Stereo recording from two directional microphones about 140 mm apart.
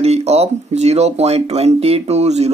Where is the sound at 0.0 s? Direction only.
50° right (ahead or behind).